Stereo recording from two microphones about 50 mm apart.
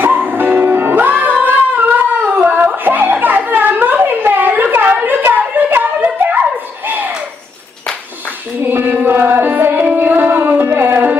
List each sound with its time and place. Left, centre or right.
0.0 s music: right
2.4 s a sound: right
8.6 s music: right